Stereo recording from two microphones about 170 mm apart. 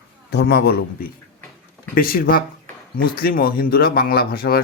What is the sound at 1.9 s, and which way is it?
Speech, 60° left (ahead or behind).